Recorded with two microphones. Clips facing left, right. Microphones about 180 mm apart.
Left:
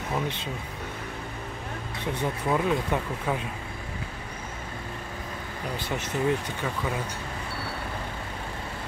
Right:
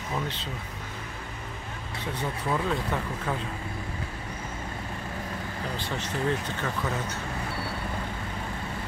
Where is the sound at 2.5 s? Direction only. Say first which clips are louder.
Left 3 dB; 15° left (ahead or behind).